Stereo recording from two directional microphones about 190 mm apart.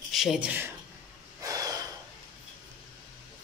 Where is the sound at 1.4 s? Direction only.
20° right (ahead or behind).